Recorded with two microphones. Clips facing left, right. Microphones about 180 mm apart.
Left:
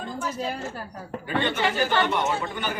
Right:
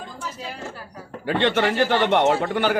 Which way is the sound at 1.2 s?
80° right.